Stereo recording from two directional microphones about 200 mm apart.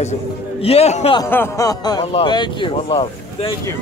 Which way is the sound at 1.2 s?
15° left (ahead or behind).